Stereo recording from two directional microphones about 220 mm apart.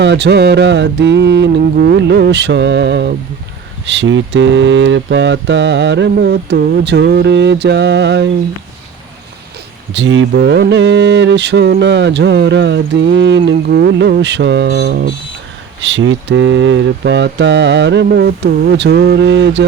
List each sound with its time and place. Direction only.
0.0 s mantra: 50° right (ahead or behind)
9.9 s mantra: 60° right (ahead or behind)